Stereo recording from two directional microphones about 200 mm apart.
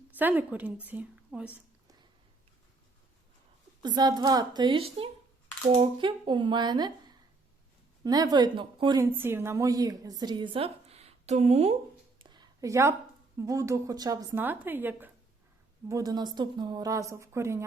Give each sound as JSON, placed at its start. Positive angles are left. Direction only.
{"t": 0.2, "sound": "speech", "side_deg": -10}
{"t": 3.8, "sound": "a woman's voice", "side_deg": -20}
{"t": 8.0, "sound": "a woman's voice", "side_deg": -20}
{"t": 12.2, "sound": "a sound", "side_deg": -20}
{"t": 13.3, "sound": "speech", "side_deg": -15}